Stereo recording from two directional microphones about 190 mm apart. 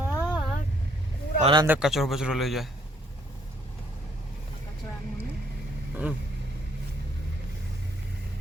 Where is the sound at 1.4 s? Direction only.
20° right (ahead or behind).